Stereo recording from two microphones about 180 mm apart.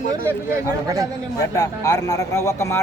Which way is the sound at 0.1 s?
15° right (ahead or behind).